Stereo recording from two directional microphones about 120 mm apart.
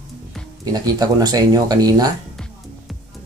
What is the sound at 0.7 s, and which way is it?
Speech, 30° right (ahead or behind).